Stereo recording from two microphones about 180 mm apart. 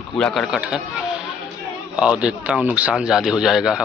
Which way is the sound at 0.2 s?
Centre (ahead or behind).